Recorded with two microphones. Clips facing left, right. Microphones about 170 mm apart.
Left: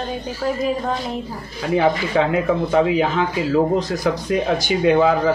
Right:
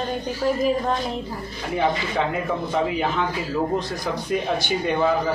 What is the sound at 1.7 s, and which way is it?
Speech, 90° left.